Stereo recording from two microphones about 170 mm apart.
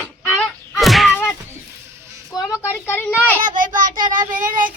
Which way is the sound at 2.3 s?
20° left (ahead or behind).